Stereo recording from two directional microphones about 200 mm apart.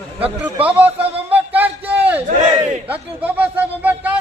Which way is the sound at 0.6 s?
5° right (ahead or behind).